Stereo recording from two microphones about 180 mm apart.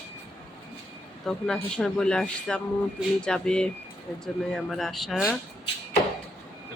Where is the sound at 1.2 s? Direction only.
Centre (ahead or behind).